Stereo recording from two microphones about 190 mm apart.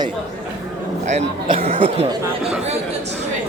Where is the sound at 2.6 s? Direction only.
35° right (ahead or behind).